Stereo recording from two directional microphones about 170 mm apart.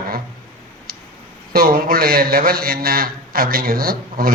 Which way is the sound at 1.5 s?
60° right (ahead or behind).